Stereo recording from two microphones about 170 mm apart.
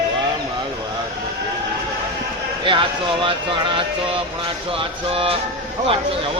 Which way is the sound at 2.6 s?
30° right (ahead or behind).